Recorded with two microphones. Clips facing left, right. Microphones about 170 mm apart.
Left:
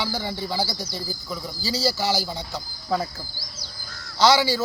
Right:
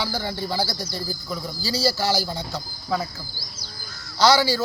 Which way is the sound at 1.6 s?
20° left (ahead or behind).